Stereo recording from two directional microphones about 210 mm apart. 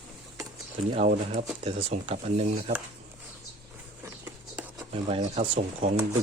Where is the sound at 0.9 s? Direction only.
35° right (ahead or behind).